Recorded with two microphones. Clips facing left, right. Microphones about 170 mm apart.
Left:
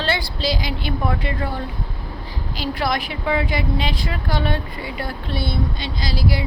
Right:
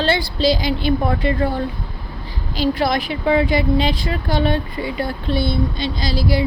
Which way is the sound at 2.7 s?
25° right (ahead or behind).